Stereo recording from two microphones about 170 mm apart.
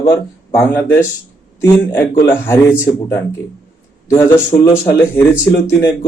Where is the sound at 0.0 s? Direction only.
15° left (ahead or behind).